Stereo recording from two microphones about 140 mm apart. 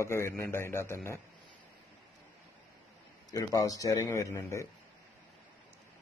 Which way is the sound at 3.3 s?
25° left (ahead or behind).